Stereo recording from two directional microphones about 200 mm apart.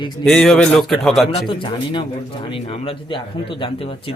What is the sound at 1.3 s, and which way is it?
A man's voice, 25° left (ahead or behind).